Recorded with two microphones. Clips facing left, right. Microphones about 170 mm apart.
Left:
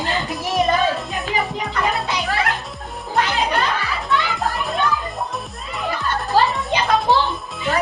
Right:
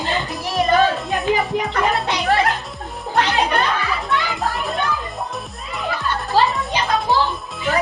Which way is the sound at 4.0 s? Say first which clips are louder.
Even; centre (ahead or behind).